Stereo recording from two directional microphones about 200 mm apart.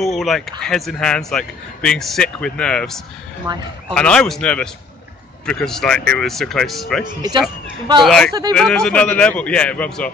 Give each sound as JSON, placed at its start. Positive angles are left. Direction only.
{"t": 0.0, "sound": "a man's voice", "side_deg": 0}
{"t": 3.5, "sound": "speech", "side_deg": -20}
{"t": 3.9, "sound": "a man's voice", "side_deg": 5}
{"t": 7.2, "sound": "speech", "side_deg": -20}
{"t": 8.0, "sound": "a man's voice", "side_deg": 0}